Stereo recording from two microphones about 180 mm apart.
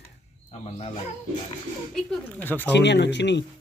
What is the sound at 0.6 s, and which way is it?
Speech, 35° left (ahead or behind).